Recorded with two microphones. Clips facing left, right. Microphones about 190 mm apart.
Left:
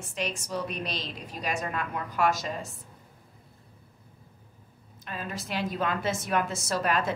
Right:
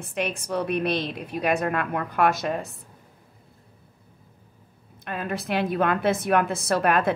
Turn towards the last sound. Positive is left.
turn(degrees=-60)  # may be behind; listen again after turning